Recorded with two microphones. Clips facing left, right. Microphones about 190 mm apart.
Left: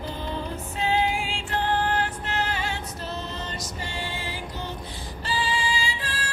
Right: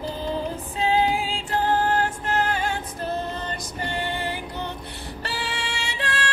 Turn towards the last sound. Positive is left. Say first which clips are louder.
# right 3 dB
turn(degrees=-75)  # may be behind; listen again after turning